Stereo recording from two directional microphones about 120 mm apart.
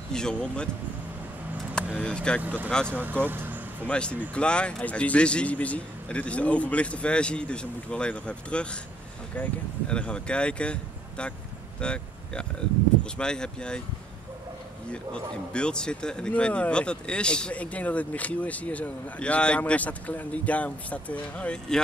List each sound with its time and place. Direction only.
0.1 s speech: 5° left (ahead or behind)
2.0 s speech: 5° left (ahead or behind)
2.4 s speech: 15° right (ahead or behind)
3.8 s speech: 10° left (ahead or behind)
14.9 s speech: 10° left (ahead or behind)